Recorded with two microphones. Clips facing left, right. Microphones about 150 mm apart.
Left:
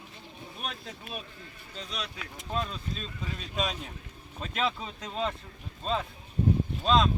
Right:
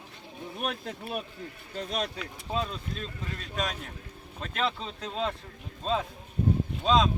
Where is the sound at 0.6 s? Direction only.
60° right (ahead or behind).